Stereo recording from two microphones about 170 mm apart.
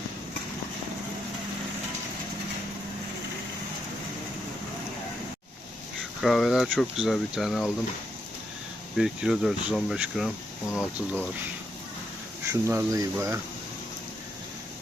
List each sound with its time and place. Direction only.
6.2 s speech: centre (ahead or behind)
9.0 s speech: centre (ahead or behind)
12.6 s speech: 20° right (ahead or behind)